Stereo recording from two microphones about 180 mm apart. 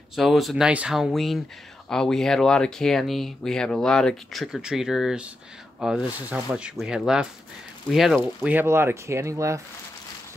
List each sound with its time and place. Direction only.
0.1 s speech: centre (ahead or behind); by 9.6 s 15° right (ahead or behind)